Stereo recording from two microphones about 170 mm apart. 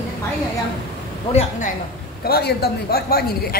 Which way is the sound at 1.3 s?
40° left (ahead or behind).